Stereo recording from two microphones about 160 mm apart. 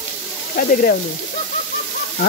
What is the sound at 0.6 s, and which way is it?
Speech, 60° left (ahead or behind).